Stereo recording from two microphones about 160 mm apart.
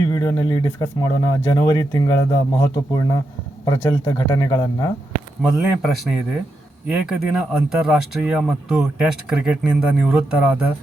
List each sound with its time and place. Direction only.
0.0 s speech: 20° left (ahead or behind)
5.4 s speech: 5° right (ahead or behind)